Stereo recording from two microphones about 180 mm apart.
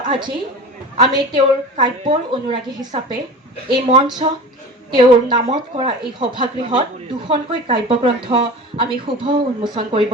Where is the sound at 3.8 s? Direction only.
30° right (ahead or behind).